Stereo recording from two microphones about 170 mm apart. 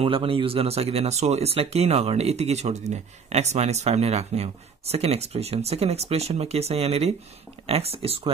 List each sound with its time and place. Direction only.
0.0 s speech: 35° right (ahead or behind)